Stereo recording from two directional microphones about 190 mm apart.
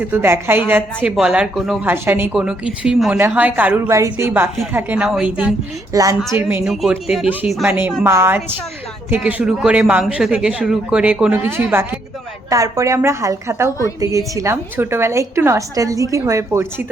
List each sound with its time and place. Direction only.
0.0 s speech: 10° right (ahead or behind)
5.9 s a woman's voice: 15° right (ahead or behind)